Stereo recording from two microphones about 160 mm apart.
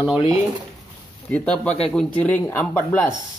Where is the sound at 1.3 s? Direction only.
5° left (ahead or behind).